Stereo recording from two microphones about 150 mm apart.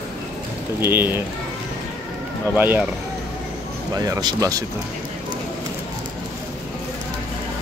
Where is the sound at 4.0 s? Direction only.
25° right (ahead or behind).